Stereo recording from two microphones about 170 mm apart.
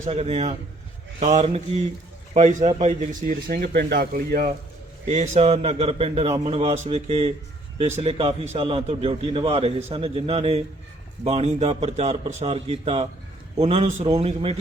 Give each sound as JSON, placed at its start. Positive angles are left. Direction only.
{"t": 0.0, "sound": "a man's voice", "side_deg": -35}
{"t": 3.5, "sound": "speech", "side_deg": -60}
{"t": 5.0, "sound": "a man's voice", "side_deg": -40}